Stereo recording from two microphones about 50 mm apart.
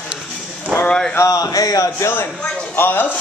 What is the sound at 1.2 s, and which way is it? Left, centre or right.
Speech, left.